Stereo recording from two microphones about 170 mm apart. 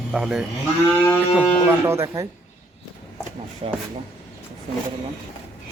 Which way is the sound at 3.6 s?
35° right (ahead or behind).